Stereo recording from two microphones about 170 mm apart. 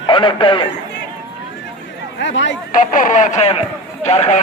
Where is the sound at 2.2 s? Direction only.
90° left.